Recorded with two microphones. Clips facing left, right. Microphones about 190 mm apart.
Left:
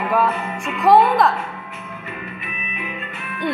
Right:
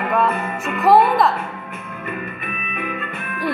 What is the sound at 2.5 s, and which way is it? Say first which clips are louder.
Music: right 4 dB; 55° right (ahead or behind).